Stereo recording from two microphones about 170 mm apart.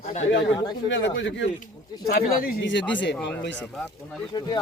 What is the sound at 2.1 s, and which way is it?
Speech, 60° left (ahead or behind).